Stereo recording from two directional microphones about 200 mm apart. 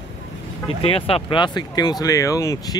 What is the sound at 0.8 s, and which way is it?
Speech, 30° left (ahead or behind).